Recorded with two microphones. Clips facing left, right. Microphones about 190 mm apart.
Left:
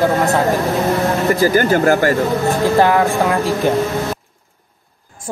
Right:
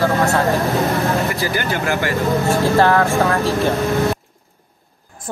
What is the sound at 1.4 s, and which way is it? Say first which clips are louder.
Speech: left 8 dB; 45° left (ahead or behind).